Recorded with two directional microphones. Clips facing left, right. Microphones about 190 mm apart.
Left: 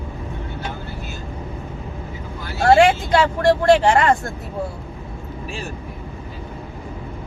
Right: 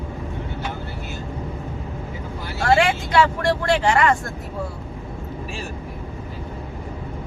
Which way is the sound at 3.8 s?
30° left (ahead or behind).